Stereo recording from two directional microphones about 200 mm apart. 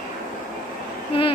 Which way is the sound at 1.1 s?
25° left (ahead or behind).